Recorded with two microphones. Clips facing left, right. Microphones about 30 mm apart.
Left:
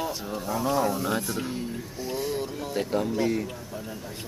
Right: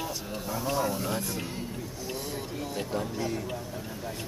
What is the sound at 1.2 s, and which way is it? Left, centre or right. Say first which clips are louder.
Speech: left 4 dB; centre.